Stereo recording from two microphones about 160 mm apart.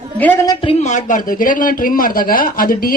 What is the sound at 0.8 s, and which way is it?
A man's voice, 50° left (ahead or behind).